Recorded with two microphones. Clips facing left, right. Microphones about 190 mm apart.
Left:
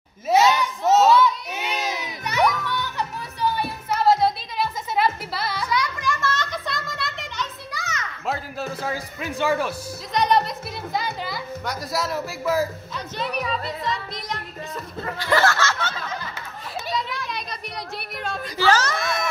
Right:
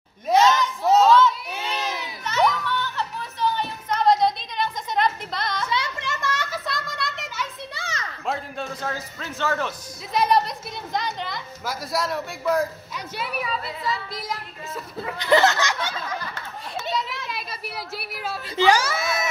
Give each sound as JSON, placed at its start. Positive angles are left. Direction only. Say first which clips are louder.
{"t": 0.3, "sound": "a sound", "louder": "even", "side_deg": 10}
{"t": 1.0, "sound": "children playing", "louder": "even", "side_deg": 15}
{"t": 5.7, "sound": "children playing", "louder": "left 3 dB", "side_deg": -25}
{"t": 6.3, "sound": "a sound", "louder": "left 1 dB", "side_deg": -5}
{"t": 7.7, "sound": "children playing", "louder": "left 1 dB", "side_deg": -30}
{"t": 8.3, "sound": "speech", "louder": "left 1 dB", "side_deg": 5}
{"t": 10.1, "sound": "music", "louder": "even", "side_deg": 0}
{"t": 12.9, "sound": "speech", "louder": "left 2 dB", "side_deg": -5}
{"t": 15.1, "sound": "snicker", "louder": "right 2 dB", "side_deg": -20}
{"t": 17.3, "sound": "a sound", "louder": "left 1 dB", "side_deg": -5}